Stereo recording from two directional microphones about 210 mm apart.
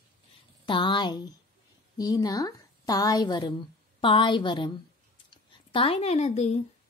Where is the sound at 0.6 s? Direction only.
20° left (ahead or behind).